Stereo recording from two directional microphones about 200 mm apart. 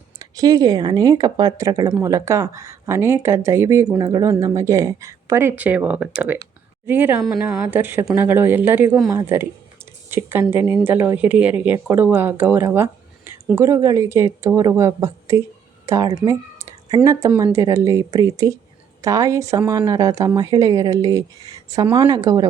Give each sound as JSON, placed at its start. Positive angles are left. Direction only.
{"t": 0.2, "sound": "speech", "side_deg": -20}